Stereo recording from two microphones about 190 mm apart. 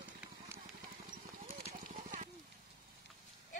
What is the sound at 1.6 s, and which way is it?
Clip-clop, 35° right (ahead or behind).